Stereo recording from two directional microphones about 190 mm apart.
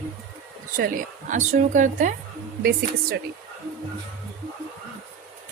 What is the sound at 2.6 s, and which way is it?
Speech, 55° right (ahead or behind).